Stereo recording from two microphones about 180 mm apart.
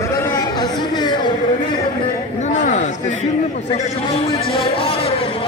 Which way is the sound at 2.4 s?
40° left (ahead or behind).